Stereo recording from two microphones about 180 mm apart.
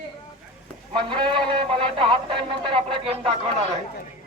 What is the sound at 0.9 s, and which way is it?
Speech, 25° right (ahead or behind).